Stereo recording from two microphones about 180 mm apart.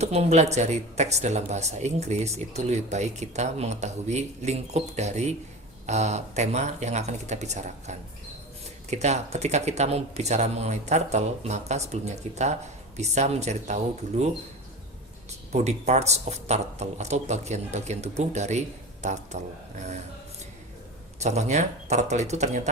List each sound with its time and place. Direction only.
0.0 s speech: 35° right (ahead or behind)
15.5 s speech: 40° right (ahead or behind)
21.2 s speech: 40° right (ahead or behind)